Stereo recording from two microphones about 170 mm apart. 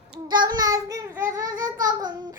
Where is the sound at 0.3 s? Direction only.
25° right (ahead or behind).